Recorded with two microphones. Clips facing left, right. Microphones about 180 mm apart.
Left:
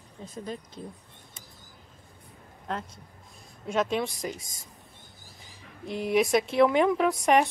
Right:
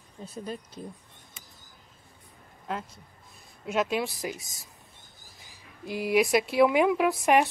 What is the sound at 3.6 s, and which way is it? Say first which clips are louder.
Speech: even; 5° right (ahead or behind).